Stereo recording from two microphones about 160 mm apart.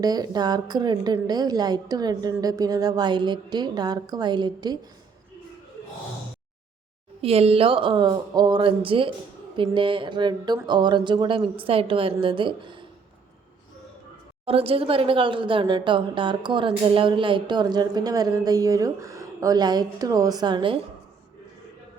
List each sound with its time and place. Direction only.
0.0 s speech: 25° right (ahead or behind)
7.2 s speech: 40° right (ahead or behind)
14.4 s speech: 35° right (ahead or behind)